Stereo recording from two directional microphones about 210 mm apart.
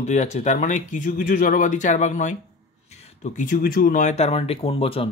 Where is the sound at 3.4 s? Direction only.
40° left (ahead or behind).